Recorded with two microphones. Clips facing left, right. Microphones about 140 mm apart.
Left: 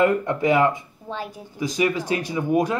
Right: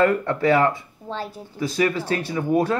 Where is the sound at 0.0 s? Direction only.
20° left (ahead or behind).